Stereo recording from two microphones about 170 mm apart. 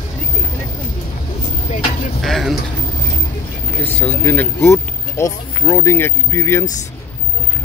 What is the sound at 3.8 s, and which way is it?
Speech, 10° left (ahead or behind).